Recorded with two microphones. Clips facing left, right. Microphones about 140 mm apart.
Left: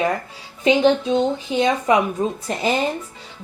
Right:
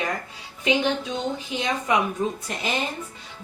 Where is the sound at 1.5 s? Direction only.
30° left (ahead or behind).